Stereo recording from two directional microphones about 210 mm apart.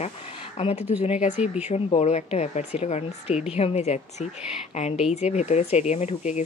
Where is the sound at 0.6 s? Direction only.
30° left (ahead or behind).